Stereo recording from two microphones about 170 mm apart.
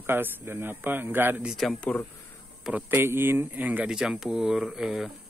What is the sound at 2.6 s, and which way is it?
Speech, 10° right (ahead or behind).